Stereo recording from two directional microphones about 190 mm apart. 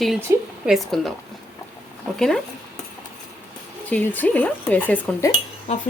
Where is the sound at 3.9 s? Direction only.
10° left (ahead or behind).